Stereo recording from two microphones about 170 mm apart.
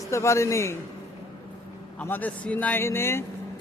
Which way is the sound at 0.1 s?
15° left (ahead or behind).